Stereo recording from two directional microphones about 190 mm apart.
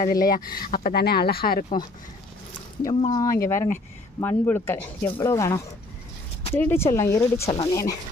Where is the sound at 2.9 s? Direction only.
25° left (ahead or behind).